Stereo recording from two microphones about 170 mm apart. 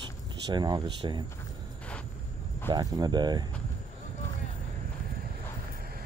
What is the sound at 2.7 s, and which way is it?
Speech, 25° right (ahead or behind).